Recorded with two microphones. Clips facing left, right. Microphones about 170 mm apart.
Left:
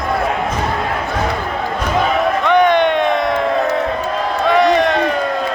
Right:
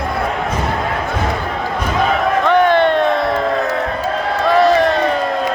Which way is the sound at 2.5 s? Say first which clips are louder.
Even; 15° left (ahead or behind).